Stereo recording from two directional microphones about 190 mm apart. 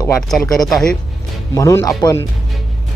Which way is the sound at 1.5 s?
15° left (ahead or behind).